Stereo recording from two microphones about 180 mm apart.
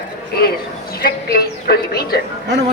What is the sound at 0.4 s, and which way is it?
A woman's voice, 60° left (ahead or behind).